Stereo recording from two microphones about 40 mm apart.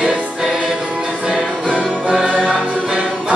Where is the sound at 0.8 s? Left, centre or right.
Right.